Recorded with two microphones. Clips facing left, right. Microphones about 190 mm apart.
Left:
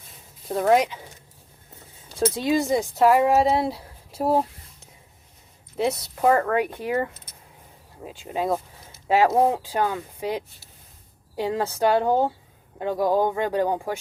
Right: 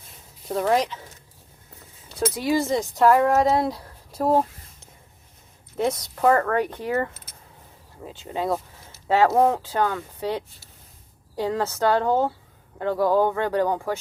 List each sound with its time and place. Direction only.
0.4 s speech: 5° left (ahead or behind)
2.1 s speech: 25° left (ahead or behind)
3.0 s speech: 5° left (ahead or behind)
5.7 s speech: 5° left (ahead or behind)
6.2 s speech: 20° left (ahead or behind)